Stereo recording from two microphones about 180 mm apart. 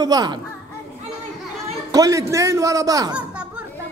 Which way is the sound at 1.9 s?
20° right (ahead or behind).